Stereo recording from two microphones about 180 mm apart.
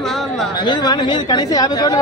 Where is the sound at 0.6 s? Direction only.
25° left (ahead or behind).